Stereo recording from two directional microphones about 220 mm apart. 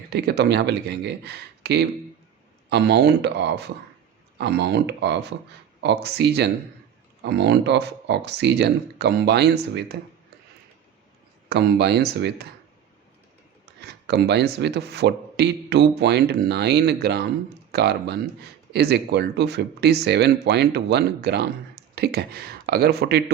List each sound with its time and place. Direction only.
0.1 s speech: 45° right (ahead or behind)
11.4 s speech: 50° right (ahead or behind)
13.8 s speech: 50° right (ahead or behind)